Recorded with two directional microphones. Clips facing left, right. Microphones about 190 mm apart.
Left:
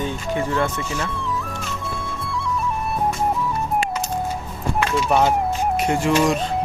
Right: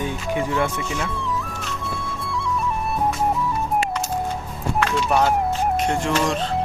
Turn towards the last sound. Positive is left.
turn(degrees=10)  # may be behind; listen again after turning